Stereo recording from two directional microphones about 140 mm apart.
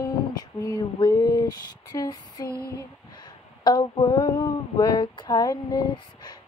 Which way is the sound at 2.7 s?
30° left (ahead or behind).